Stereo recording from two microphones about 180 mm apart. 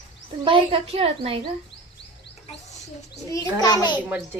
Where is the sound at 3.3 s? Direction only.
20° left (ahead or behind).